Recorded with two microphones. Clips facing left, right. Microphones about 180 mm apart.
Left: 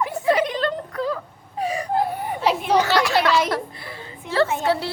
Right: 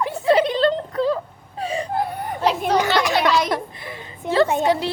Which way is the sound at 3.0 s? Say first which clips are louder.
Even; 15° right (ahead or behind).